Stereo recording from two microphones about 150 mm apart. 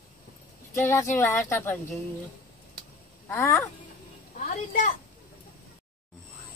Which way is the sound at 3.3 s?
15° left (ahead or behind).